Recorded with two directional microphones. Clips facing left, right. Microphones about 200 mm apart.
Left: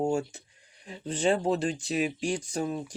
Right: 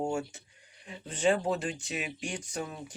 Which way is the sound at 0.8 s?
35° left (ahead or behind).